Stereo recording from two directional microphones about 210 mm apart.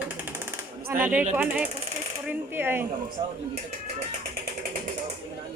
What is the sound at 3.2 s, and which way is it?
Speech, 20° right (ahead or behind).